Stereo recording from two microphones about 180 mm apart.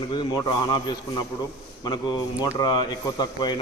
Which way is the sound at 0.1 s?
25° left (ahead or behind).